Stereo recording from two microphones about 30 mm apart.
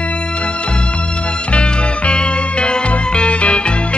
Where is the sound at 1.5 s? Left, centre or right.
Left.